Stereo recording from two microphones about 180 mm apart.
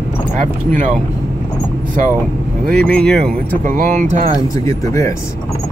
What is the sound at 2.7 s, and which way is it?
Speech, 5° left (ahead or behind).